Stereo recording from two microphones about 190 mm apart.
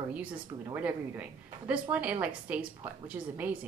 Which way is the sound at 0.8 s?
5° right (ahead or behind).